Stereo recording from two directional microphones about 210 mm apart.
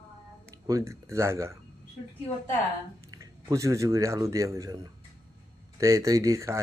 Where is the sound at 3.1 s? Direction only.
15° right (ahead or behind).